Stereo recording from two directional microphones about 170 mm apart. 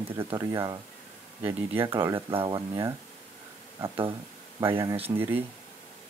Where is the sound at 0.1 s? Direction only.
15° right (ahead or behind).